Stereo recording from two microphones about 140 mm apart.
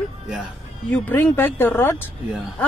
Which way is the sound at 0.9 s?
10° left (ahead or behind).